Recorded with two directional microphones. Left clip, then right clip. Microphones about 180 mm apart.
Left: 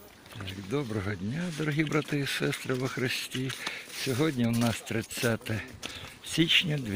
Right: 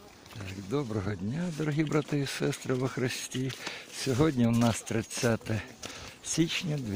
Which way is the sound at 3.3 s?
20° left (ahead or behind).